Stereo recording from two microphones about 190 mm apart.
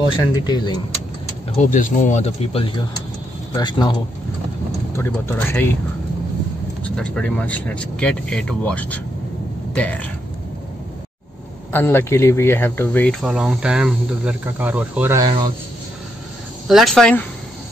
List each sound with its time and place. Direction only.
0.1 s speech: 20° left (ahead or behind)
1.6 s speech: 40° left (ahead or behind); by 5.8 s 10° left (ahead or behind)
6.8 s speech: 5° left (ahead or behind)
11.7 s speech: 10° left (ahead or behind)
13.2 s speech: 5° right (ahead or behind); by 15.5 s 20° right (ahead or behind)
16.6 s speech: centre (ahead or behind)